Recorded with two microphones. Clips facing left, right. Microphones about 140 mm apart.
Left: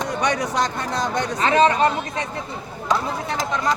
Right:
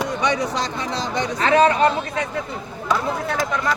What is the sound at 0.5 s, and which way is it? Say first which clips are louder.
Speech: left 2 dB; 50° left (ahead or behind).